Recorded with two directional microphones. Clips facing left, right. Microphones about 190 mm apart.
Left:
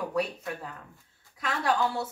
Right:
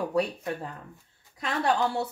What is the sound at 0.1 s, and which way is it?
Speech, 30° right (ahead or behind).